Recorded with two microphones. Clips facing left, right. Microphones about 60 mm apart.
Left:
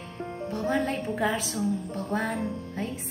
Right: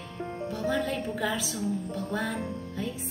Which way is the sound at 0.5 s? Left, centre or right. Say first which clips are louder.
Left 2 dB; left.